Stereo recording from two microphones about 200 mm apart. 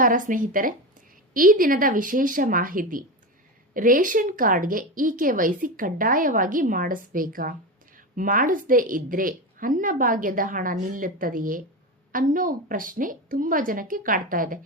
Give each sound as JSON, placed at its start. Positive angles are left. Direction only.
{"t": 0.0, "sound": "a woman's voice", "side_deg": -40}